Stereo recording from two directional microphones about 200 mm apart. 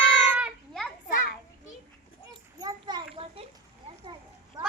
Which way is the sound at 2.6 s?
20° right (ahead or behind).